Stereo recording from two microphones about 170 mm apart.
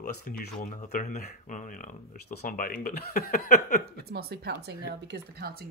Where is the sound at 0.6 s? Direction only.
50° left (ahead or behind).